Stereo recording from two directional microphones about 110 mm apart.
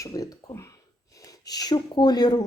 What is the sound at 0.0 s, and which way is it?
Speech, 30° left (ahead or behind).